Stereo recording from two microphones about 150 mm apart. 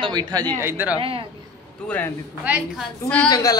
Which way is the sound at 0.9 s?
40° right (ahead or behind).